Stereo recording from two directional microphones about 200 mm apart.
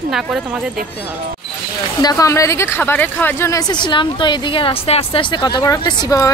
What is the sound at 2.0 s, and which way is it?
A woman's voice, 20° left (ahead or behind).